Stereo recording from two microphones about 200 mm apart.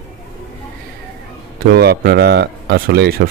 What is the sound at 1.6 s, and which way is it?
Speech, 50° right (ahead or behind).